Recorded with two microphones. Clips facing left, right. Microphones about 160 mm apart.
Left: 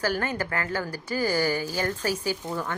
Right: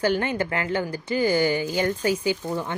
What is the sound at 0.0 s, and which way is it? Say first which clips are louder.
A woman's voice: right 4 dB; 25° right (ahead or behind).